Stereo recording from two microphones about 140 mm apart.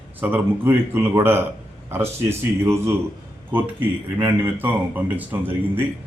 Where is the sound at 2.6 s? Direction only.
20° right (ahead or behind).